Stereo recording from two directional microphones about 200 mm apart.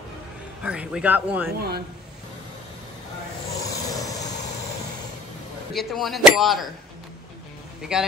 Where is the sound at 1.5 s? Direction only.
50° right (ahead or behind).